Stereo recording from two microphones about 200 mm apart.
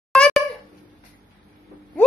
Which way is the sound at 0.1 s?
Centre (ahead or behind).